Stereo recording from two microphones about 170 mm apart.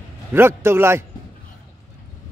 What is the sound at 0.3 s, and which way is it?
Speech, 15° right (ahead or behind).